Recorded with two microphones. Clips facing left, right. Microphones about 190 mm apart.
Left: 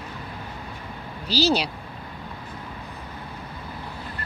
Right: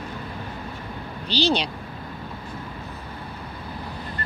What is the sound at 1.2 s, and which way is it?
Speech, 5° left (ahead or behind).